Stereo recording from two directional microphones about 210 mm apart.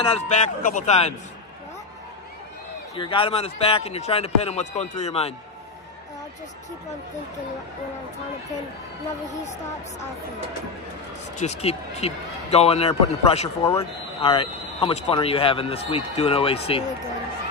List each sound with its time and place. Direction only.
0.1 s a man's voice: 35° left (ahead or behind)
3.0 s speech: 25° left (ahead or behind)
11.3 s speech: 30° left (ahead or behind)